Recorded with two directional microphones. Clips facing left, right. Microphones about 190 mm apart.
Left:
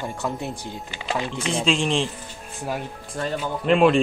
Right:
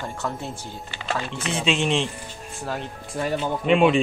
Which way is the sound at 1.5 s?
5° right (ahead or behind).